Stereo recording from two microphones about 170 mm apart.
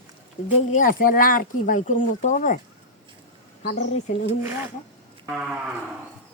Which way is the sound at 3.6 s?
50° left (ahead or behind).